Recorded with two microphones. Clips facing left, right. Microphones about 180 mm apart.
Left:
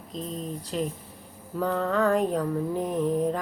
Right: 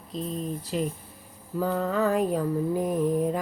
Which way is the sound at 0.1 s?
Centre (ahead or behind).